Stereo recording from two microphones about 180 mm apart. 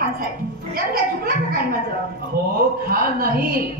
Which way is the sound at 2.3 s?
55° right (ahead or behind).